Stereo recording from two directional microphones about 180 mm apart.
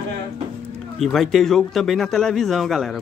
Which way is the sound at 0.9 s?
Centre (ahead or behind).